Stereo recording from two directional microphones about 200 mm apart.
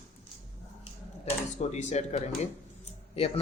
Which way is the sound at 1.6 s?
35° left (ahead or behind).